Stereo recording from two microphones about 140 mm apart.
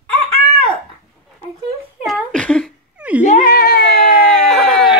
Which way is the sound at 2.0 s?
5° left (ahead or behind).